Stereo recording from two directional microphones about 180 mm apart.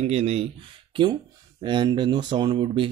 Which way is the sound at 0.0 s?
35° right (ahead or behind).